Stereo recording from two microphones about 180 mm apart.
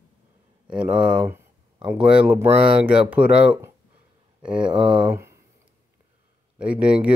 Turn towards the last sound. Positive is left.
turn(degrees=-5)  # may be behind; listen again after turning